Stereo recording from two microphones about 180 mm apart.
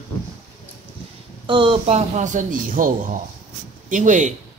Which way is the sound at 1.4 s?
30° right (ahead or behind).